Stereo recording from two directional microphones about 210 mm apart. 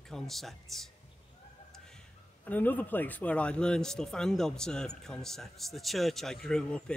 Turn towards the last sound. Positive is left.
turn(degrees=5)  # may be behind; listen again after turning